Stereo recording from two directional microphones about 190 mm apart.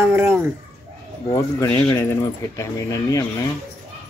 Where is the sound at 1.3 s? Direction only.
15° left (ahead or behind).